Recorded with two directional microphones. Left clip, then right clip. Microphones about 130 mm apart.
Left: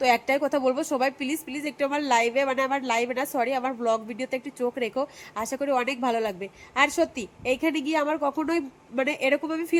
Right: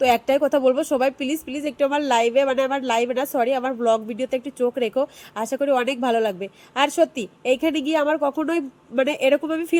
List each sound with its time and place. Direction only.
0.0 s speech: 15° right (ahead or behind)